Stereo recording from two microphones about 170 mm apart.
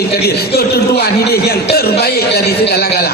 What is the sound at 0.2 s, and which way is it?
A man's voice, 70° left (ahead or behind).